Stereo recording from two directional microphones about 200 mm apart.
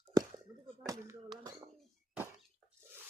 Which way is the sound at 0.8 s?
15° right (ahead or behind).